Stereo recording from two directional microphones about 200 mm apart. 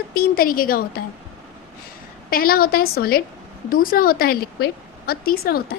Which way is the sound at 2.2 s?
50° left (ahead or behind).